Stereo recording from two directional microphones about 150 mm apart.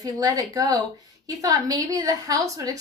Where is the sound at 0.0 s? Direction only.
25° right (ahead or behind).